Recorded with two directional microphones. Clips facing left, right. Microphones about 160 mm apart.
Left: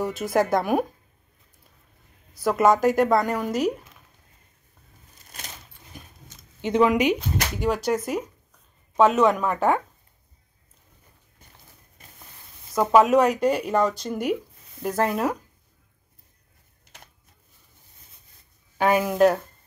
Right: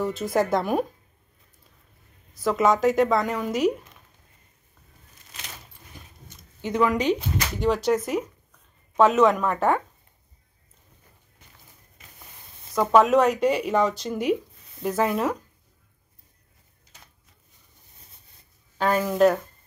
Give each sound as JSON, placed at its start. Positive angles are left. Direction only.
{"t": 0.0, "sound": "speech", "side_deg": 5}
{"t": 2.4, "sound": "speech", "side_deg": 5}
{"t": 5.9, "sound": "a sound", "side_deg": 15}
{"t": 6.6, "sound": "speech", "side_deg": 20}
{"t": 7.2, "sound": "speech", "side_deg": 5}
{"t": 12.9, "sound": "speech", "side_deg": 0}
{"t": 18.8, "sound": "speech", "side_deg": 15}